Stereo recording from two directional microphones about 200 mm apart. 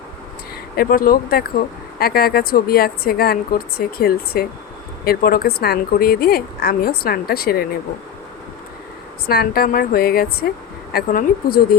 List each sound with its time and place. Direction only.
0.8 s a woman's voice: 45° left (ahead or behind)
9.2 s a woman's voice: 50° left (ahead or behind)